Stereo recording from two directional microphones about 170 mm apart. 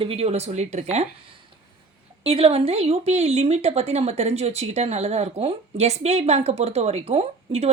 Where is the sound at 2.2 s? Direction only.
35° right (ahead or behind).